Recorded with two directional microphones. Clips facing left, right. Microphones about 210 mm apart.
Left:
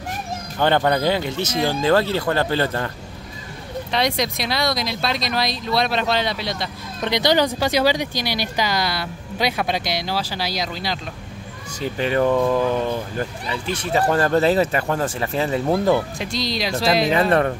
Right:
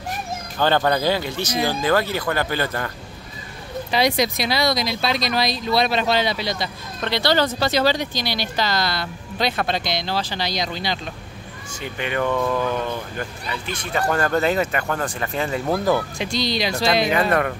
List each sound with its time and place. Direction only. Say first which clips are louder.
0.6 s speech: left 1 dB; 20° left (ahead or behind)
3.9 s speech: right 2 dB; 5° right (ahead or behind)
7.0 s speech: left 2 dB; 15° left (ahead or behind); by 11.0 s centre (ahead or behind)
11.8 s speech: left 5 dB; 35° left (ahead or behind)
12.4 s speech: left 3 dB; 15° left (ahead or behind)
12.6 s speech: left 3 dB; 30° left (ahead or behind)
16.2 s speech: right 1 dB; centre (ahead or behind)
17.3 s speech: left 3 dB; 30° left (ahead or behind)